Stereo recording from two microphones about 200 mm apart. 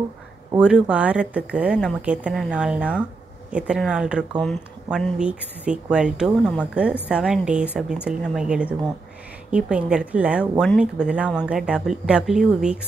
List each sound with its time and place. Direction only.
0.6 s speech: 5° right (ahead or behind)